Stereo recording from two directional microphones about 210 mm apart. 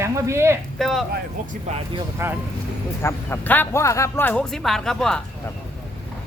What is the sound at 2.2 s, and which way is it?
Speech, 10° right (ahead or behind).